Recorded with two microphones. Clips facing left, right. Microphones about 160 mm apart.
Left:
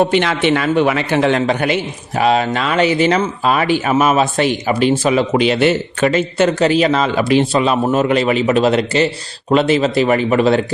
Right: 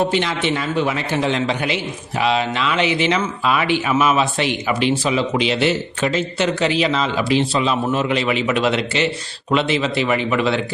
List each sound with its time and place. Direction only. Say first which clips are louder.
0.0 s a man's voice: left 5 dB; 65° left (ahead or behind)
1.4 s a man's voice: left 5 dB; 50° left (ahead or behind)